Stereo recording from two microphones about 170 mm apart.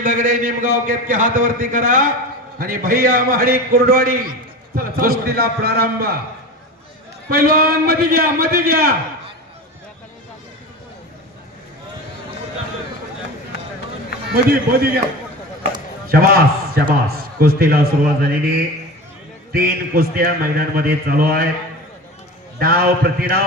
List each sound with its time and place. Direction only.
0.0 s a man's voice: 50° right (ahead or behind)
7.3 s a man's voice: 60° right (ahead or behind)
14.3 s a man's voice: 65° right (ahead or behind)
16.0 s a man's voice: 60° right (ahead or behind)
19.5 s a man's voice: 60° right (ahead or behind)
22.5 s a man's voice: 60° right (ahead or behind)